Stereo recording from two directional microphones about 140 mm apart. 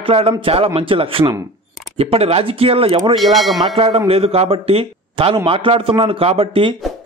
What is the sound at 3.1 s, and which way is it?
Speech, centre (ahead or behind).